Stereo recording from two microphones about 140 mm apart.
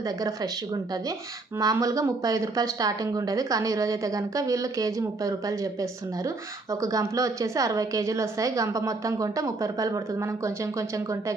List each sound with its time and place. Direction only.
0.0 s speech: 25° right (ahead or behind)